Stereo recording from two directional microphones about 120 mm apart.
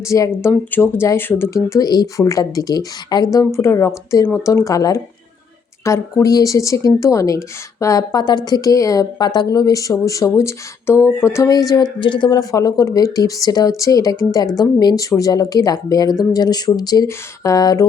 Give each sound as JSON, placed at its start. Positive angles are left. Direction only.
{"t": 0.1, "sound": "speech", "side_deg": 25}
{"t": 3.4, "sound": "speech", "side_deg": 20}
{"t": 11.7, "sound": "speech", "side_deg": 40}